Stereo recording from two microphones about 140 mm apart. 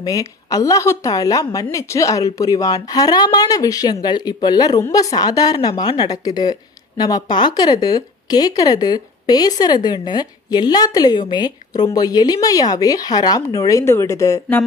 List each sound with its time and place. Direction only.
0.0 s a woman's voice: 25° left (ahead or behind)